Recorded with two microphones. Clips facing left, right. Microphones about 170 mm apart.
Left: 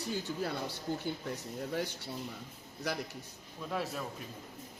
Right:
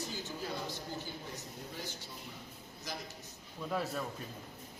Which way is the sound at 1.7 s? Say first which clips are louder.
Left 9 dB; 65° left (ahead or behind).